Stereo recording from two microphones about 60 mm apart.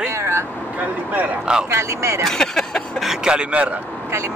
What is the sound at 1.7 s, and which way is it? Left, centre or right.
Speech, right.